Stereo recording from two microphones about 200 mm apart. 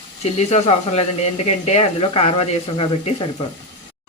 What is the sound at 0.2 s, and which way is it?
Speech, 30° left (ahead or behind).